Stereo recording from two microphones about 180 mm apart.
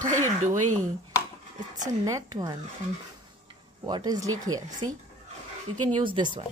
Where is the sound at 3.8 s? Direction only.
25° right (ahead or behind).